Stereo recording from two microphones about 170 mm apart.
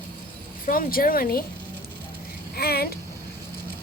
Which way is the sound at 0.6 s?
55° left (ahead or behind).